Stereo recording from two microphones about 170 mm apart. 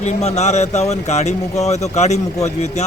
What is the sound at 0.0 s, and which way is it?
Speech, 40° left (ahead or behind).